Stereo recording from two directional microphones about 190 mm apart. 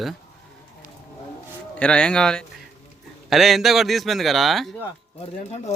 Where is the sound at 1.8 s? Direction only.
5° left (ahead or behind).